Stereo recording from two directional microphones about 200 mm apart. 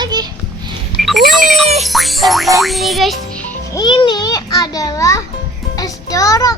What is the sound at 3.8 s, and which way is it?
A child's voice, 25° left (ahead or behind).